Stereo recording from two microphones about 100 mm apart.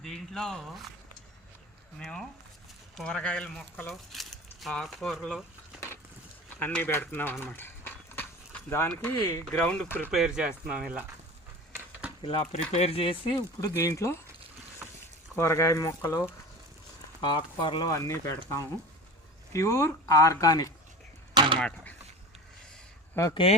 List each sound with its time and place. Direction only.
0.0 s speech: 5° left (ahead or behind)
2.0 s speech: 5° left (ahead or behind)
3.9 s speech: centre (ahead or behind)
6.6 s speech: 15° left (ahead or behind)
10.1 s speech: 5° right (ahead or behind)
12.2 s speech: 70° left (ahead or behind)
13.6 s speech: 30° left (ahead or behind)
15.4 s speech: 30° left (ahead or behind)
17.2 s speech: 50° left (ahead or behind)
17.8 s speech: 35° left (ahead or behind)
21.3 s a sound: 55° right (ahead or behind)
23.3 s speech: 70° left (ahead or behind)